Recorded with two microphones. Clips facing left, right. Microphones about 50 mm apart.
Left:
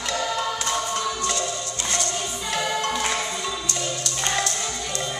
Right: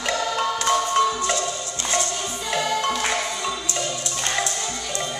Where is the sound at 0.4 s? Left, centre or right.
Right.